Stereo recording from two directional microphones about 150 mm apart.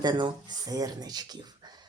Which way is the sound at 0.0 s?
30° right (ahead or behind).